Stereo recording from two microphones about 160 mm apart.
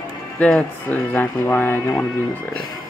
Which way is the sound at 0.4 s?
5° left (ahead or behind).